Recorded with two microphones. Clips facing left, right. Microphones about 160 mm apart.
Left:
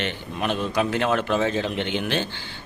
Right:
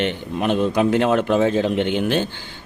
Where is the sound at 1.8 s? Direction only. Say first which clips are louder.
Right 5 dB; 50° right (ahead or behind).